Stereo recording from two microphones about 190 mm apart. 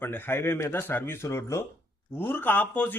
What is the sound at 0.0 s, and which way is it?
A man's voice, 10° left (ahead or behind).